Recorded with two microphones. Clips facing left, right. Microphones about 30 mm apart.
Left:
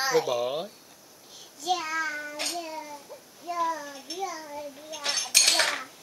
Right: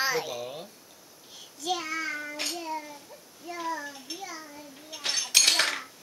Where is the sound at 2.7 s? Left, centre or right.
Centre.